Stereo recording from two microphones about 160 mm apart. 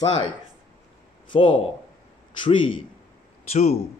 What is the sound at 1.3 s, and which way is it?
Speech, 35° left (ahead or behind).